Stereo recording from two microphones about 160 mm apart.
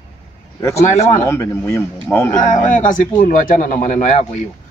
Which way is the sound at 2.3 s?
50° left (ahead or behind).